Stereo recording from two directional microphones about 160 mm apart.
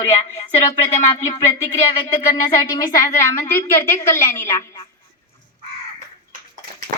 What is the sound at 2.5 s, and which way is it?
A woman's voice, 20° left (ahead or behind).